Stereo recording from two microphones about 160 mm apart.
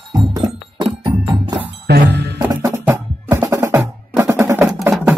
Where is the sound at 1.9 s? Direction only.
85° right.